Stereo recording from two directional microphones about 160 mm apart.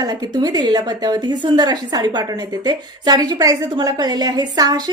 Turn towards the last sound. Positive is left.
turn(degrees=-25)  # may be behind; listen again after turning